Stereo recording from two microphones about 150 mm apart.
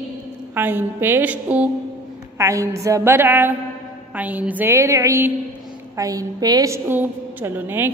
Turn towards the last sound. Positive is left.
turn(degrees=-15)  # may be behind; listen again after turning